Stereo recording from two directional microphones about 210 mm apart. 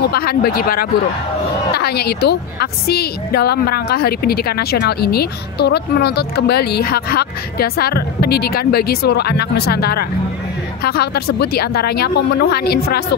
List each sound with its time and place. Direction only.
0.1 s a woman's voice: 45° left (ahead or behind)